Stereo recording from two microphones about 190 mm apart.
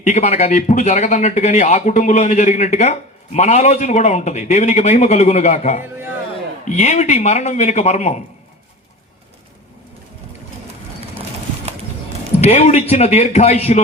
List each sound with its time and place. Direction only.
0.0 s speech: 35° left (ahead or behind)
12.4 s speech: 35° left (ahead or behind)